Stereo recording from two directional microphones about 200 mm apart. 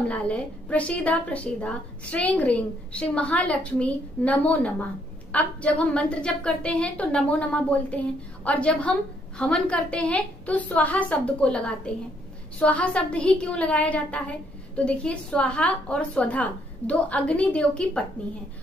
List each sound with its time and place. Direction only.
0.1 s a woman's voice: 5° left (ahead or behind)